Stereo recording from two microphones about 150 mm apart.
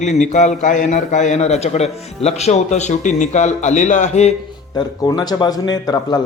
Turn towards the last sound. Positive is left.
turn(degrees=25)  # may be behind; listen again after turning